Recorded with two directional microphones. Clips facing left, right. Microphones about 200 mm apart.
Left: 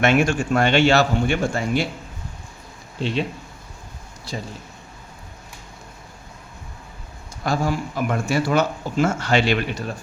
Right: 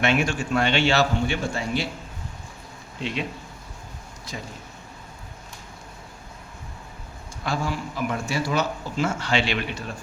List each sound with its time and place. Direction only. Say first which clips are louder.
0.0 s speech: left 5 dB; 45° left (ahead or behind)
3.0 s speech: left 5 dB; 30° left (ahead or behind)
4.3 s speech: left 5 dB; 30° left (ahead or behind)
7.4 s speech: left 5 dB; 45° left (ahead or behind)